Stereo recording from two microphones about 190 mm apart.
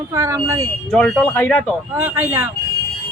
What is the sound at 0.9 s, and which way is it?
Speech, 5° left (ahead or behind).